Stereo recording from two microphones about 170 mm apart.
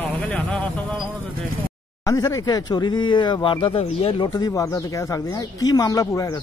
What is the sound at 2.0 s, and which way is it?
Speech, 20° left (ahead or behind).